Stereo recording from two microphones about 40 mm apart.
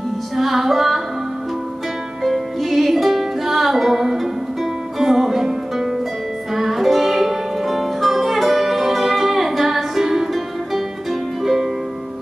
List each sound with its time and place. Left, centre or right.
0.4 s female singing: centre
2.2 s music: centre